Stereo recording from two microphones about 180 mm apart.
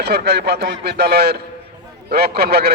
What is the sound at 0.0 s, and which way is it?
A man's voice, 65° right (ahead or behind).